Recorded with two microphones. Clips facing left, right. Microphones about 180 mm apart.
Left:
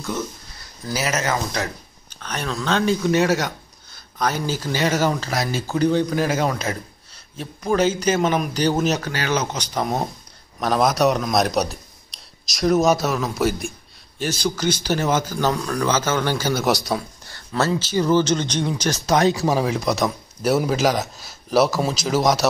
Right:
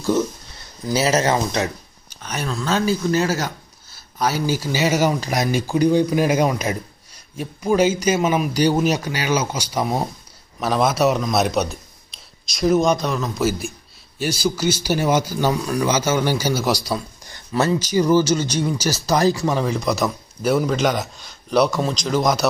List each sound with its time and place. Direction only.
0.8 s speech: 30° right (ahead or behind)
2.0 s speech: 10° right (ahead or behind)
16.6 s speech: centre (ahead or behind)
17.6 s speech: 15° right (ahead or behind); by 22.5 s centre (ahead or behind)